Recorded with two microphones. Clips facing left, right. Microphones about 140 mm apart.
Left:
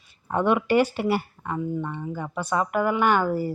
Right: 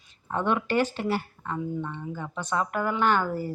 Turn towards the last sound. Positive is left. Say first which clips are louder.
# left 3 dB
turn(degrees=10)  # may be behind; listen again after turning